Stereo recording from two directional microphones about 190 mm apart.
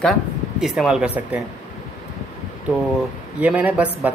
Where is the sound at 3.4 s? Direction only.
10° right (ahead or behind).